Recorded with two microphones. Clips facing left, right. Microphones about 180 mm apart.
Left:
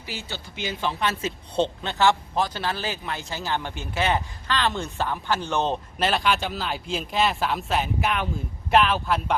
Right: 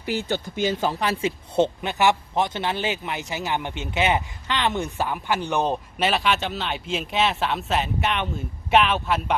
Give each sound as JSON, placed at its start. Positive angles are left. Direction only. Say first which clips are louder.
{"t": 0.0, "sound": "speech", "louder": "right 10 dB", "side_deg": -55}
{"t": 0.5, "sound": "speech", "louder": "right 3 dB", "side_deg": -45}
{"t": 1.5, "sound": "speech", "louder": "right 2 dB", "side_deg": -15}